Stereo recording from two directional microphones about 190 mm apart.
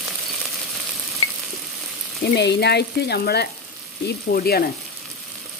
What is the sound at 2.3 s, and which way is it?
Frying, 60° left (ahead or behind).